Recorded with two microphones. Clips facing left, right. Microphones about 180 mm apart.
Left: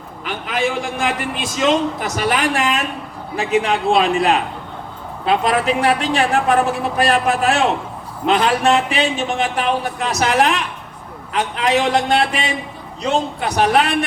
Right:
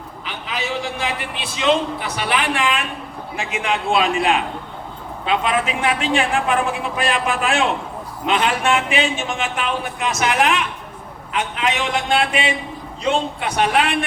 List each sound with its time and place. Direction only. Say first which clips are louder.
0.3 s a man's voice: left 6 dB; 50° left (ahead or behind)